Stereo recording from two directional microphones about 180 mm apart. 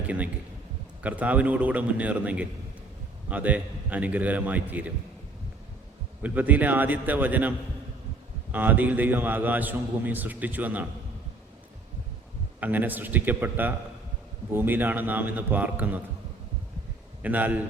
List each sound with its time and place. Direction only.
1.0 s a man's voice: 10° right (ahead or behind)
6.2 s a man's voice: 10° right (ahead or behind)
8.5 s a man's voice: 10° right (ahead or behind)
12.5 s a man's voice: 10° right (ahead or behind)
17.2 s a man's voice: 10° right (ahead or behind)